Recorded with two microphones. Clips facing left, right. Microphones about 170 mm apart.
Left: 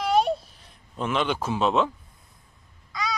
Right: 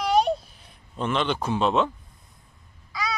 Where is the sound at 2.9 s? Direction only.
5° right (ahead or behind).